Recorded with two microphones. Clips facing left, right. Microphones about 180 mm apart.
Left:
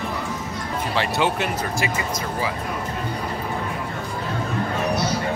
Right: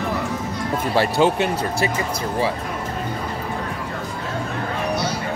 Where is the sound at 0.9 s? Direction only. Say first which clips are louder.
Right 5 dB; 35° right (ahead or behind).